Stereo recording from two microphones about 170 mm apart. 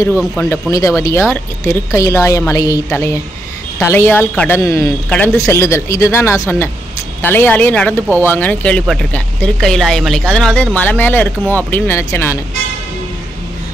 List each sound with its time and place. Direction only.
0.1 s speech: centre (ahead or behind)
0.5 s a man's voice: 20° left (ahead or behind)